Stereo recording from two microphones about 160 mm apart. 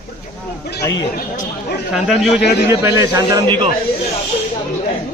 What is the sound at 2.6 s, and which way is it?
A man's voice, 20° right (ahead or behind).